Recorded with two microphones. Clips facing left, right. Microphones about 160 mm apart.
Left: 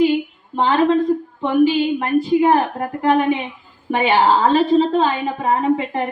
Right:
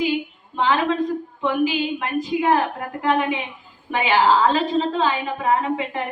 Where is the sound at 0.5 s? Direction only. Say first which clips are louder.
Left 4 dB; 35° left (ahead or behind).